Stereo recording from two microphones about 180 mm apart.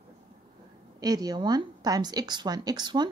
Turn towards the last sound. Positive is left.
turn(degrees=-25)  # may be behind; listen again after turning